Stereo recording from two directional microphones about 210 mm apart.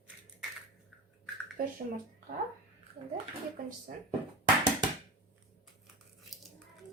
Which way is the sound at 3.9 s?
40° right (ahead or behind).